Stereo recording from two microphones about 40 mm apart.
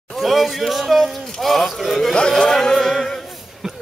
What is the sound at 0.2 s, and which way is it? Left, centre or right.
A man's voice, centre.